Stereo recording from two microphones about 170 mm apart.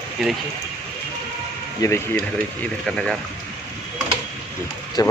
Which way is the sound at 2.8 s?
5° left (ahead or behind).